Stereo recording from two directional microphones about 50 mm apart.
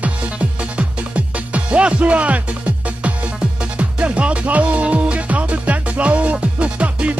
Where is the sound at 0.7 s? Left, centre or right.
Right.